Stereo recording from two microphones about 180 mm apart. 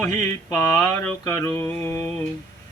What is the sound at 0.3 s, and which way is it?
Mantra, 15° left (ahead or behind).